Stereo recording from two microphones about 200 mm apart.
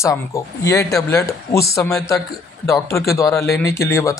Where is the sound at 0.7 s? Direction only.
15° left (ahead or behind).